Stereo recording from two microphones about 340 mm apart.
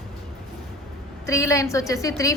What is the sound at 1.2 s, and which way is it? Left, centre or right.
A woman's voice, centre.